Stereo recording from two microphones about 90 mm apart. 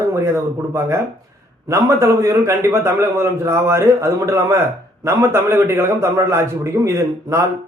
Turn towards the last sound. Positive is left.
turn(degrees=-30)  # may be behind; listen again after turning